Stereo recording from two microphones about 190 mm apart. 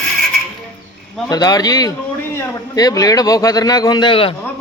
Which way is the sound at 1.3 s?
20° left (ahead or behind).